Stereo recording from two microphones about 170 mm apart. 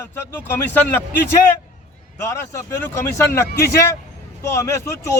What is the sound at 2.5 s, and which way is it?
Speech, 15° left (ahead or behind).